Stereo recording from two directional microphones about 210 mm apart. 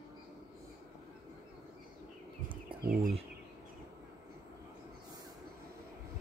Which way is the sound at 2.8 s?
45° right (ahead or behind).